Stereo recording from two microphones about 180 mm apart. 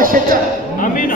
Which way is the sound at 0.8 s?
50° left (ahead or behind).